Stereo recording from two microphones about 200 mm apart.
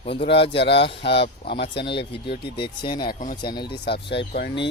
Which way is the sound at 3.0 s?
40° left (ahead or behind).